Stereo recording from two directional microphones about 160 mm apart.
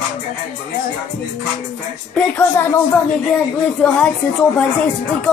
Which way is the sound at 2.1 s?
15° left (ahead or behind).